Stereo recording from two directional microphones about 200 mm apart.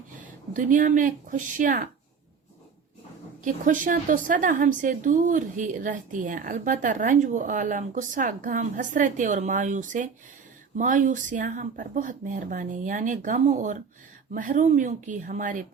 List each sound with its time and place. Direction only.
0.5 s a woman's voice: 40° right (ahead or behind)
3.4 s a woman's voice: 40° right (ahead or behind)